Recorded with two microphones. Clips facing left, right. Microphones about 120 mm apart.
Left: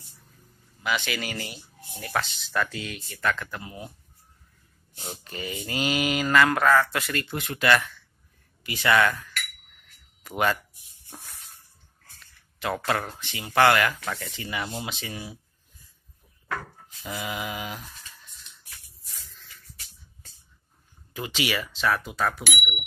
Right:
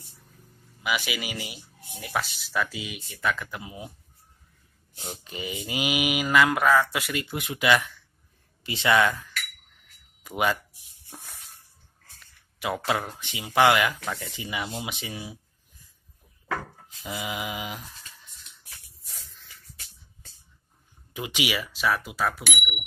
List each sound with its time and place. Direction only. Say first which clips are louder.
0.8 s speech: left 1 dB; 10° right (ahead or behind)
5.2 s speech: even; 15° right (ahead or behind)
12.5 s speech: even; 10° right (ahead or behind)
17.0 s a sound: even; 15° right (ahead or behind)
21.1 s speech: even; 15° right (ahead or behind); by 22.8 s centre (ahead or behind)